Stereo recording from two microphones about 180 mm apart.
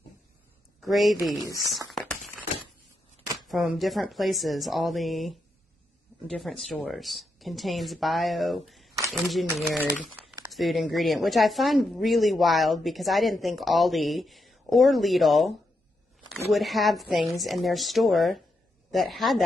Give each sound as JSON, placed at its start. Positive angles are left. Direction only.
{"t": 0.7, "sound": "a man's voice", "side_deg": 0}
{"t": 1.4, "sound": "speech", "side_deg": 20}
{"t": 2.0, "sound": "a sound", "side_deg": 0}
{"t": 3.3, "sound": "speech", "side_deg": 0}
{"t": 16.5, "sound": "speech", "side_deg": 0}